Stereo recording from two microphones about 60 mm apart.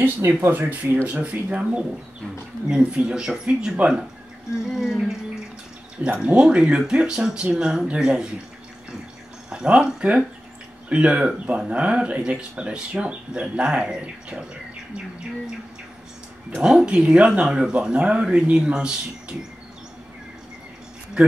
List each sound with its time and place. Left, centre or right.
0.5 s speech: right
4.6 s speech: centre
6.2 s speech: centre
9.5 s speech: centre
16.6 s speech: centre
21.2 s speech: centre